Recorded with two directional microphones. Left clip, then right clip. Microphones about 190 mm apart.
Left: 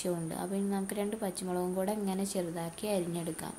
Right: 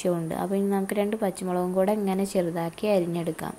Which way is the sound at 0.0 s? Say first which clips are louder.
Right 9 dB; 20° right (ahead or behind).